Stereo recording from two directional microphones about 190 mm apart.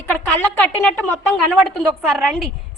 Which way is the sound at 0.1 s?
5° left (ahead or behind).